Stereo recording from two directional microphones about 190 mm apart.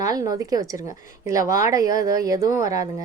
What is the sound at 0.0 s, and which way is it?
A woman's voice, 20° right (ahead or behind).